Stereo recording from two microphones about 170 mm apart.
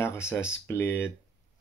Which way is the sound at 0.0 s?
15° left (ahead or behind).